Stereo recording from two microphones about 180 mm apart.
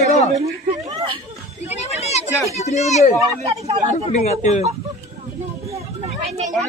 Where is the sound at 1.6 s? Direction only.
35° left (ahead or behind).